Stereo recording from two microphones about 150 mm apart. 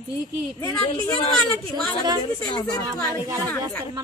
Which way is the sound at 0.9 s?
30° left (ahead or behind).